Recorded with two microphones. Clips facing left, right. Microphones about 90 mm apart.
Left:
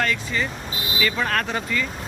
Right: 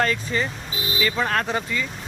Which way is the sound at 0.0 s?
35° right (ahead or behind).